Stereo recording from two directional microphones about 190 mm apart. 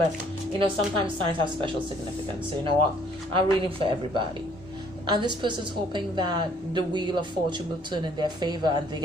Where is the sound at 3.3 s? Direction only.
25° right (ahead or behind).